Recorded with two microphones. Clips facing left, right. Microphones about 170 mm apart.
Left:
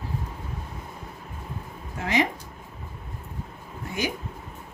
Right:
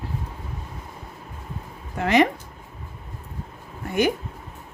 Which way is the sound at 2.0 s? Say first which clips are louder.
Right 6 dB; 65° right (ahead or behind).